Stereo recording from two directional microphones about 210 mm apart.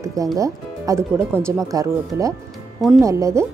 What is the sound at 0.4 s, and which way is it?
Speech, 15° right (ahead or behind).